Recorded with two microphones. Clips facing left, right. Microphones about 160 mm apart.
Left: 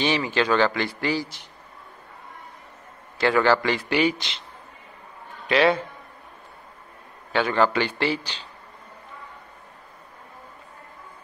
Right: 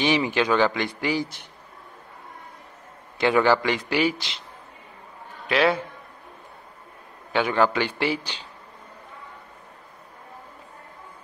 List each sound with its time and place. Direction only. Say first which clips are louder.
0.0 s a man's voice: right 1 dB; 15° right (ahead or behind)
3.2 s a man's voice: even; 15° right (ahead or behind)
5.5 s a man's voice: left 2 dB; centre (ahead or behind)
7.3 s a man's voice: even; 10° right (ahead or behind)